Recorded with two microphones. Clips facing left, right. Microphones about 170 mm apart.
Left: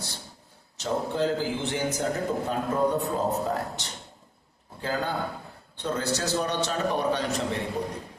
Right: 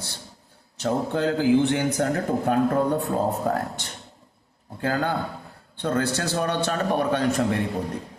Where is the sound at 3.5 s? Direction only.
55° right (ahead or behind).